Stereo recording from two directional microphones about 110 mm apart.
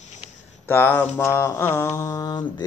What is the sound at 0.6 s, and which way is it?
Mantra, 20° left (ahead or behind).